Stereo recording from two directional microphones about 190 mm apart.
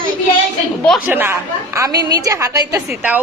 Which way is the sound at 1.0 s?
10° right (ahead or behind).